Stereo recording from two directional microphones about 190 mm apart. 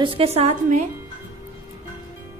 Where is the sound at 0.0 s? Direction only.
30° right (ahead or behind).